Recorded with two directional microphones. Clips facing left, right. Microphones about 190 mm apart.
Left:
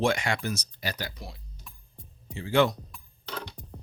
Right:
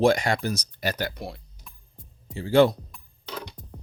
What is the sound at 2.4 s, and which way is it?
Speech, 35° right (ahead or behind).